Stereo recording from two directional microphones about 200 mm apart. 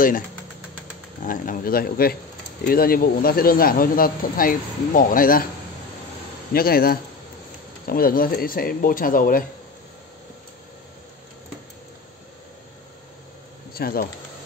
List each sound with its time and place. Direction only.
1.2 s speech: 40° left (ahead or behind)
6.5 s speech: 50° left (ahead or behind)
13.7 s speech: 50° left (ahead or behind)